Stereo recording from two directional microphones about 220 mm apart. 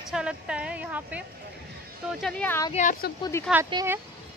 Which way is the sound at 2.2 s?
5° left (ahead or behind).